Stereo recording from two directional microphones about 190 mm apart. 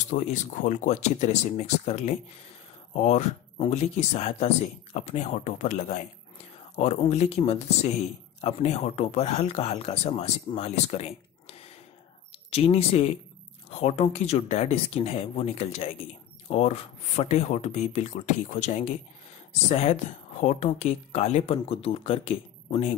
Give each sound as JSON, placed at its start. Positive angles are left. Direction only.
{"t": 0.0, "sound": "speech", "side_deg": 40}